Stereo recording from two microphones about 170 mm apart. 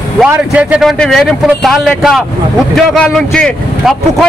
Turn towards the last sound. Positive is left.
turn(degrees=5)  # may be behind; listen again after turning